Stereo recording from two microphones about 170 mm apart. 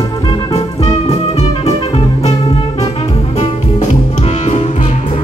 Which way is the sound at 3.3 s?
45° left (ahead or behind).